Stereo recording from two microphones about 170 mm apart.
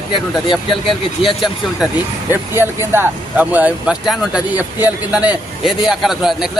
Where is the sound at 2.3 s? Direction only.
15° right (ahead or behind).